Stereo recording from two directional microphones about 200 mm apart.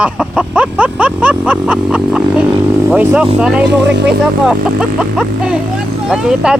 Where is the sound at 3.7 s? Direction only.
60° right (ahead or behind).